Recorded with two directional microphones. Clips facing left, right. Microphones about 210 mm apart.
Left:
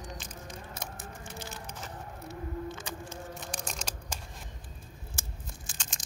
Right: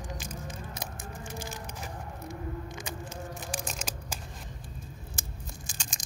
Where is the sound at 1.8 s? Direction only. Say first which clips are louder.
Right 2 dB; 15° right (ahead or behind).